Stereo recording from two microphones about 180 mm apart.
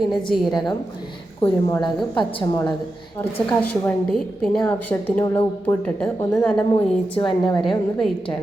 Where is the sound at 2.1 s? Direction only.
25° left (ahead or behind).